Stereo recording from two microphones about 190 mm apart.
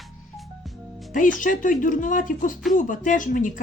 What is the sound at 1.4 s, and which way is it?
A woman's voice, 45° left (ahead or behind).